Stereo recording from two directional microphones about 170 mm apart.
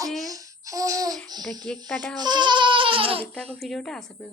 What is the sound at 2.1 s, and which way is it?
Babbling, 25° right (ahead or behind).